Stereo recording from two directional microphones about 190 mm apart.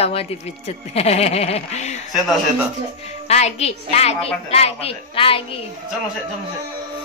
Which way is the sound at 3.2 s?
35° left (ahead or behind).